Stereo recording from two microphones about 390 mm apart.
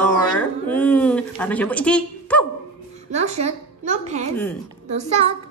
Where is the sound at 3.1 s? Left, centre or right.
Centre.